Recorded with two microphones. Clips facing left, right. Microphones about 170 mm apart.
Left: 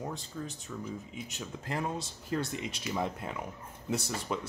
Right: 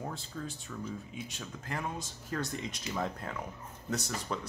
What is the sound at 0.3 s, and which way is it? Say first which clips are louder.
Speech: even; 5° left (ahead or behind).